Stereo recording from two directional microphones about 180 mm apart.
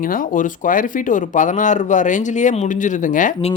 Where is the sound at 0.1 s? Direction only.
45° left (ahead or behind).